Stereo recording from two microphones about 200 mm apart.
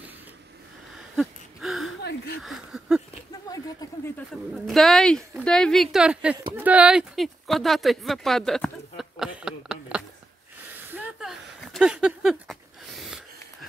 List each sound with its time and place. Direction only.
1.1 s gasp: centre (ahead or behind)
2.4 s speech: centre (ahead or behind)
3.4 s speech: 20° left (ahead or behind)
4.3 s speech: centre (ahead or behind)
10.7 s a sound: 10° right (ahead or behind)